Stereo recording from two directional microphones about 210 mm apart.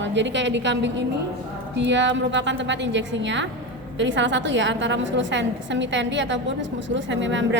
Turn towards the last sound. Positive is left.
turn(degrees=-60)  # may be behind; listen again after turning